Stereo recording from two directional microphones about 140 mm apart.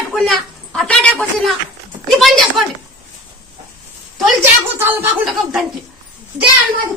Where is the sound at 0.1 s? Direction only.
5° left (ahead or behind).